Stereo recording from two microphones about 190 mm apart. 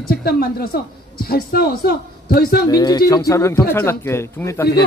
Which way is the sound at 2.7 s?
20° left (ahead or behind).